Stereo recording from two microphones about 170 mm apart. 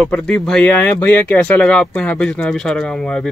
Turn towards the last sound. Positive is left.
turn(degrees=5)  # may be behind; listen again after turning